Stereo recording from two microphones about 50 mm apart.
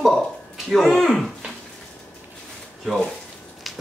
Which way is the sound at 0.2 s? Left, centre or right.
Centre.